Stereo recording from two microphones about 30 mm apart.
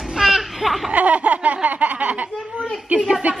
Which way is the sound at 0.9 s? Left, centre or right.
Right.